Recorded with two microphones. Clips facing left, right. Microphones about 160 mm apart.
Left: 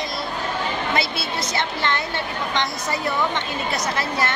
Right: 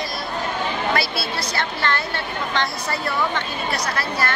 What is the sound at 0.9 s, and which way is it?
A woman's voice, 20° left (ahead or behind).